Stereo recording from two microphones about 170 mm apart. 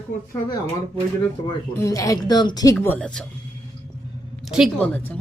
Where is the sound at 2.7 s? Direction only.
10° left (ahead or behind).